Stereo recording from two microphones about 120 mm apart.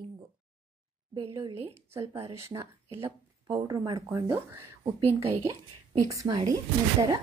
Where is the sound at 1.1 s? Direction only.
35° right (ahead or behind).